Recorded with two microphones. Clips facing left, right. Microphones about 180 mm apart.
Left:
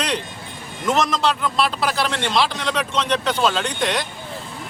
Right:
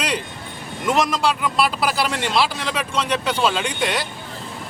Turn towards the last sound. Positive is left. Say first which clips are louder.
# even
turn(degrees=-10)  # may be behind; listen again after turning